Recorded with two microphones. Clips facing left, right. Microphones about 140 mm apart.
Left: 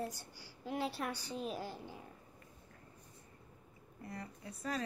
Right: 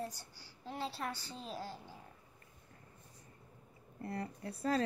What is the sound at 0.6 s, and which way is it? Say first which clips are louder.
A woman's voice: left 2 dB; 15° left (ahead or behind).